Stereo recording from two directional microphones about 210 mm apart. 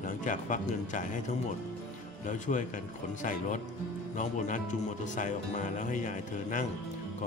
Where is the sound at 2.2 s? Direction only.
35° left (ahead or behind).